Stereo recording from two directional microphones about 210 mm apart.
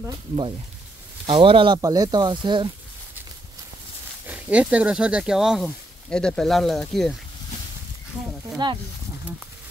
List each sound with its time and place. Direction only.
1.2 s speech: 25° right (ahead or behind)
4.3 s speech: 5° right (ahead or behind)
8.6 s speech: 20° right (ahead or behind)